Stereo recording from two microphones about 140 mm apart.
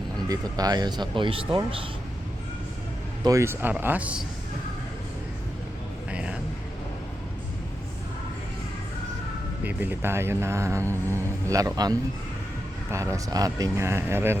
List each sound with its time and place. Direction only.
0.3 s speech: 25° right (ahead or behind)
3.2 s speech: 20° right (ahead or behind)
6.1 s a sound: 10° right (ahead or behind)
9.6 s speech: 15° right (ahead or behind)